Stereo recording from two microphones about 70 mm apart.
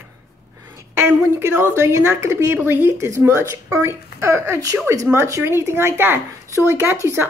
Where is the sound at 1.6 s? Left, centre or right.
Right.